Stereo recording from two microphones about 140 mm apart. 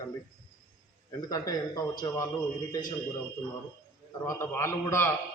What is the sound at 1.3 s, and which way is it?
A man's voice, 25° left (ahead or behind).